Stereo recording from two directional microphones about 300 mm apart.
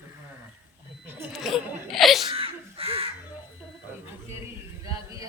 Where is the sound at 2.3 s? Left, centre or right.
Centre.